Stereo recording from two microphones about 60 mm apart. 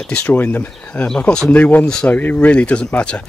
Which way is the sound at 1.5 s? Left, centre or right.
Left.